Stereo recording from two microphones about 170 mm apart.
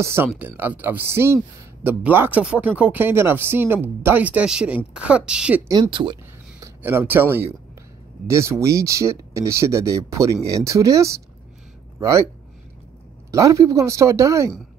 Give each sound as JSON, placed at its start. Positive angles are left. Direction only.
{"t": 0.0, "sound": "a woman's voice", "side_deg": -15}
{"t": 5.7, "sound": "speech", "side_deg": -25}
{"t": 6.6, "sound": "speech", "side_deg": -15}
{"t": 13.3, "sound": "speech", "side_deg": -20}